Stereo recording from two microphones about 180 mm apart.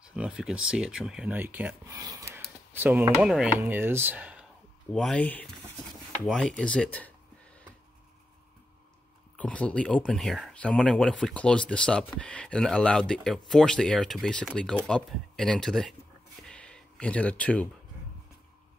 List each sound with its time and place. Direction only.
0.1 s speech: 5° right (ahead or behind)
2.0 s a sound: 20° right (ahead or behind)
3.2 s speech: 5° right (ahead or behind)
4.9 s speech: 5° left (ahead or behind)
9.4 s speech: 5° left (ahead or behind)
16.4 s a sound: 5° left (ahead or behind)